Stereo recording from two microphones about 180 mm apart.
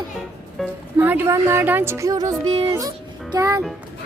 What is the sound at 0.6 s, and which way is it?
Music, centre (ahead or behind).